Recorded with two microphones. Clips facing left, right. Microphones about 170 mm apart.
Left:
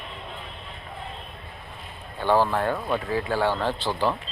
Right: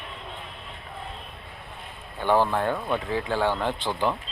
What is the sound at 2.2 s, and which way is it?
Speech, 15° right (ahead or behind).